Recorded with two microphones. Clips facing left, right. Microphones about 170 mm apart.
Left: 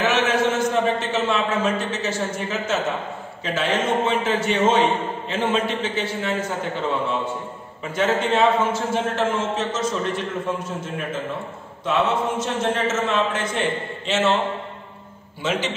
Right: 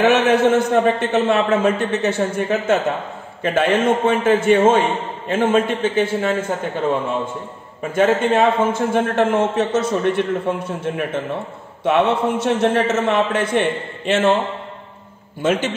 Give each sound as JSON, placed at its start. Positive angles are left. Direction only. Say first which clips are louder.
{"t": 0.0, "sound": "a man's voice", "louder": "right 6 dB", "side_deg": -60}
{"t": 7.9, "sound": "a man's voice", "louder": "right 5 dB", "side_deg": -55}
{"t": 11.8, "sound": "a man's voice", "louder": "right 5 dB", "side_deg": -60}
{"t": 15.4, "sound": "a man's voice", "louder": "right 6 dB", "side_deg": -50}